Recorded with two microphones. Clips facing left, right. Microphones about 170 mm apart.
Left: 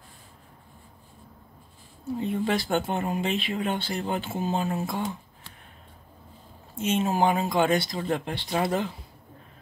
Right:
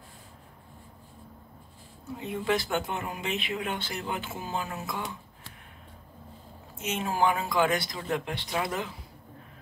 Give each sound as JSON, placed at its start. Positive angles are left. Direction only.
{"t": 2.1, "sound": "speech", "side_deg": 35}
{"t": 6.7, "sound": "speech", "side_deg": 30}